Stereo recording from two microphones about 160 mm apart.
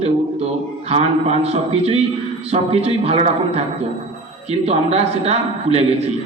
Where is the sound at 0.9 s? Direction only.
40° right (ahead or behind).